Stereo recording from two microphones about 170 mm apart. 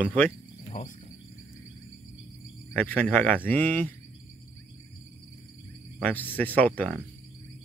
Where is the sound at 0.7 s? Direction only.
45° left (ahead or behind).